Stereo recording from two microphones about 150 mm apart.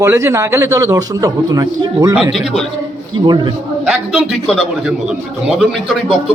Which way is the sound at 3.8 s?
Centre (ahead or behind).